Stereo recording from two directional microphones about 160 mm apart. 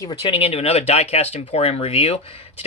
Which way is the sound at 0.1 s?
30° left (ahead or behind).